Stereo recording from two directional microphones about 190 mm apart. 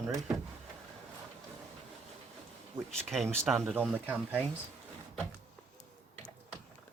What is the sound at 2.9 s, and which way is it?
Speech, centre (ahead or behind).